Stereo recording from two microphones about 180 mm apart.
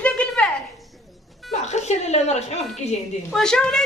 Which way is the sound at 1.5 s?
40° left (ahead or behind).